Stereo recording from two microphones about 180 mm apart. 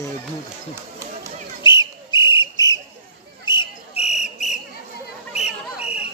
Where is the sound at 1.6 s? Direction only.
25° left (ahead or behind).